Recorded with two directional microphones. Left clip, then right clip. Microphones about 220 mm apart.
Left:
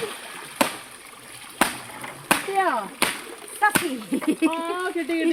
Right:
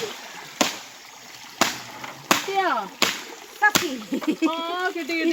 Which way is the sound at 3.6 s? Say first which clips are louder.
Right 1 dB; 45° left (ahead or behind).